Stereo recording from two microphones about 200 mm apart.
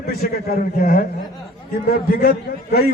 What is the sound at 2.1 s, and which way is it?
Speech, 55° left (ahead or behind).